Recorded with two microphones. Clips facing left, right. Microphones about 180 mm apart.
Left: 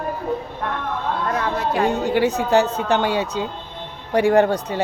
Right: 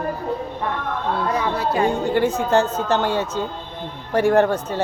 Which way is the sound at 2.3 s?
15° left (ahead or behind).